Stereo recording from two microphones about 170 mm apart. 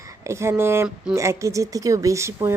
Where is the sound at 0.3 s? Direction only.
15° right (ahead or behind).